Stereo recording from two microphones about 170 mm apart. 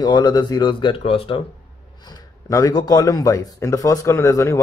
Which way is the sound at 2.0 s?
20° left (ahead or behind).